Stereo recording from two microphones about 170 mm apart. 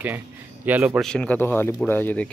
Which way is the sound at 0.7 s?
10° right (ahead or behind).